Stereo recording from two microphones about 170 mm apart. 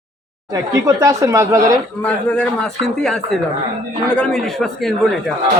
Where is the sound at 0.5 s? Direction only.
20° right (ahead or behind).